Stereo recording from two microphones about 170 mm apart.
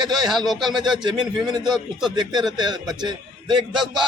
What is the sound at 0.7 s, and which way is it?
A man's voice, 25° right (ahead or behind).